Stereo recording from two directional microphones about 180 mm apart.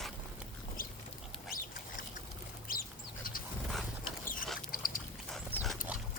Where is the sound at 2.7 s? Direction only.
55° left (ahead or behind).